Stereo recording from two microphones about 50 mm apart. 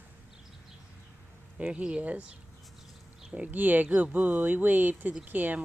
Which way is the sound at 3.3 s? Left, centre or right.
Right.